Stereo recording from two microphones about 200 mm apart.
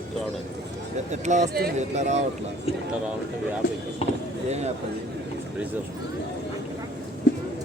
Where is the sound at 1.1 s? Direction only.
35° right (ahead or behind).